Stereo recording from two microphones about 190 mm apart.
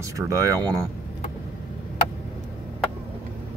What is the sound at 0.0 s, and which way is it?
Speech, 20° right (ahead or behind).